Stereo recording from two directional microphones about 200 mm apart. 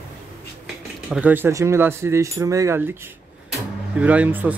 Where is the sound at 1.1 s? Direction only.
10° right (ahead or behind).